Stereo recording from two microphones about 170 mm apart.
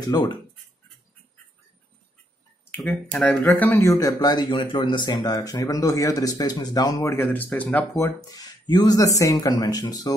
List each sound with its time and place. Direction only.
0.0 s speech: 25° left (ahead or behind)
2.8 s speech: 5° left (ahead or behind); by 10.1 s 25° left (ahead or behind)